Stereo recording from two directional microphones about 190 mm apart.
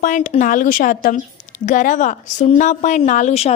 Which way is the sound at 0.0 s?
40° left (ahead or behind).